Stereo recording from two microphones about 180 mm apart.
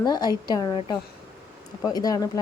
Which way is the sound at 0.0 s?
20° left (ahead or behind).